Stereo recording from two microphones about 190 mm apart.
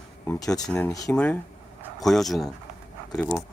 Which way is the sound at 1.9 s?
Centre (ahead or behind).